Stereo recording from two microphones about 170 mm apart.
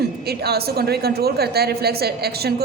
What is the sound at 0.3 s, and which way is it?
A woman's voice, 70° right (ahead or behind).